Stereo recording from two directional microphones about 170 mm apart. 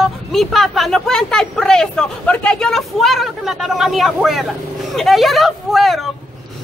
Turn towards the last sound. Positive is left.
turn(degrees=0)  # may be behind; listen again after turning